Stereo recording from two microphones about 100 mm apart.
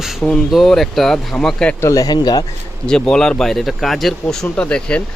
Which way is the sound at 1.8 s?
35° left (ahead or behind).